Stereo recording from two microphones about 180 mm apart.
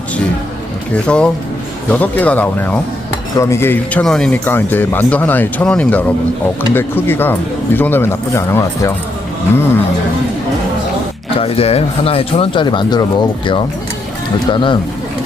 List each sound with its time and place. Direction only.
1.0 s speech: 5° left (ahead or behind)
11.3 s speech: 35° left (ahead or behind)